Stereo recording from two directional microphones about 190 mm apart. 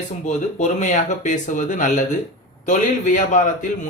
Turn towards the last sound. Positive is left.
turn(degrees=40)  # may be behind; listen again after turning